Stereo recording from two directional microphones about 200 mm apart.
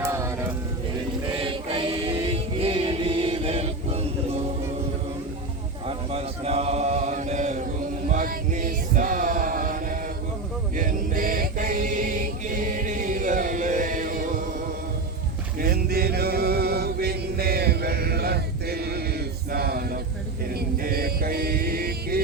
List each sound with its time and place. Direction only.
0.0 s a sound: 15° right (ahead or behind)
1.4 s choir: 25° right (ahead or behind)
5.9 s mantra: 30° right (ahead or behind)
8.1 s music: 40° right (ahead or behind)
10.8 s chant: 40° right (ahead or behind)
15.5 s mantra: 50° right (ahead or behind)